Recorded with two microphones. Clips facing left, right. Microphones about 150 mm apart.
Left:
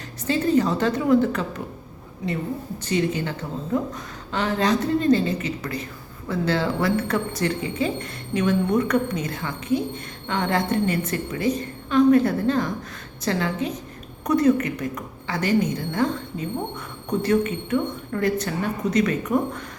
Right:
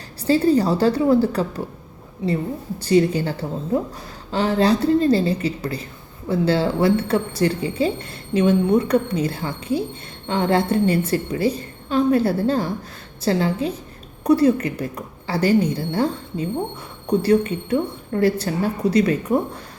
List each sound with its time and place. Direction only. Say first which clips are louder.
0.3 s a woman's voice: right 4 dB; 35° right (ahead or behind)